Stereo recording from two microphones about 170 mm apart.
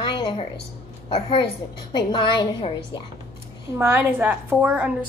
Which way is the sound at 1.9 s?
30° left (ahead or behind).